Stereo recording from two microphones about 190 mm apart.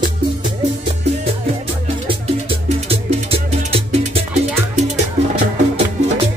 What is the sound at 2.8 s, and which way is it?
Music, 30° right (ahead or behind).